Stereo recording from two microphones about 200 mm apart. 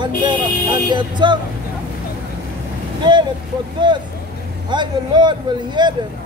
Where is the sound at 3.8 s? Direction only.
20° right (ahead or behind).